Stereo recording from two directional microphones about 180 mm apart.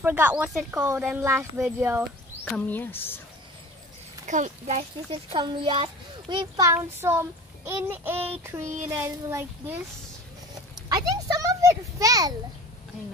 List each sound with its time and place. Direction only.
0.0 s speech: 10° right (ahead or behind)
0.7 s speech: 15° right (ahead or behind)
2.5 s speech: 10° left (ahead or behind)
4.3 s a child's voice: 40° right (ahead or behind); by 9.8 s 10° right (ahead or behind)
11.0 s a child's voice: 20° right (ahead or behind)